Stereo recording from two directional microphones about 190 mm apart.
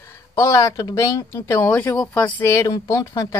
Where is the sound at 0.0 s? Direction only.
15° left (ahead or behind).